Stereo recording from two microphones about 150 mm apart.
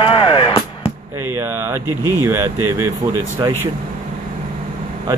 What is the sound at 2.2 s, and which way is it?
Speech, 15° right (ahead or behind).